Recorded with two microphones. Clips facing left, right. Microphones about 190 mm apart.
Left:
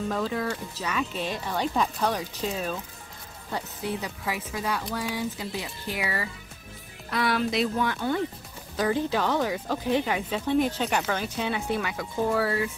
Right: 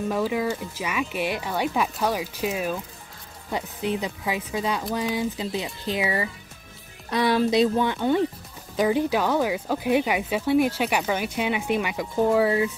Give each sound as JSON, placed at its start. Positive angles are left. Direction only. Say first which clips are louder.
{"t": 0.1, "sound": "speech", "louder": "right 6 dB", "side_deg": -10}